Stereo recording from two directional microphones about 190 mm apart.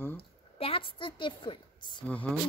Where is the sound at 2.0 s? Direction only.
10° left (ahead or behind).